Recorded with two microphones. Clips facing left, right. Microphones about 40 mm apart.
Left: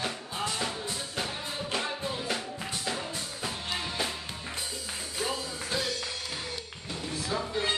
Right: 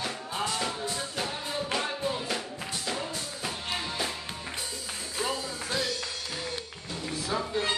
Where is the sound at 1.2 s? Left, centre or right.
Centre.